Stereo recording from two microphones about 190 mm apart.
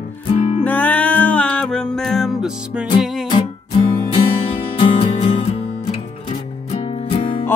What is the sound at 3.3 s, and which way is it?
Music, 25° left (ahead or behind).